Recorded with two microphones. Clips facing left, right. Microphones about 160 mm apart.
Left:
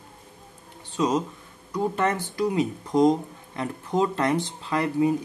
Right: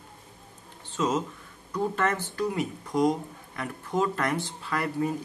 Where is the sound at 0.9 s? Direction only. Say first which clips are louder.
Left 3 dB; 15° left (ahead or behind).